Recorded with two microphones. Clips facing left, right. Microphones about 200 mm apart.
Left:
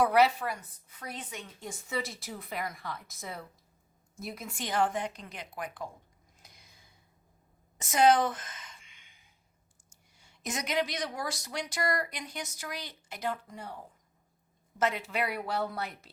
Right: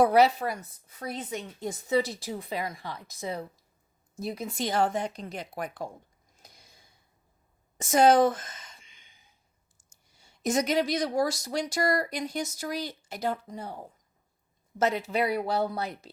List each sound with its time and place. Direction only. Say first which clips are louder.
0.1 s speech: right 3 dB; 30° right (ahead or behind)
7.9 s speech: right 4 dB; 45° right (ahead or behind)
10.2 s speech: right 10 dB; 40° right (ahead or behind)